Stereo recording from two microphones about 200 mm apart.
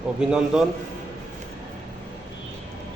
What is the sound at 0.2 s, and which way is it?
Speech, 5° right (ahead or behind).